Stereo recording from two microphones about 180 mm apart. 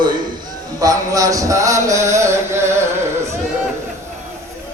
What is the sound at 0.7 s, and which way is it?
Chant, 20° right (ahead or behind).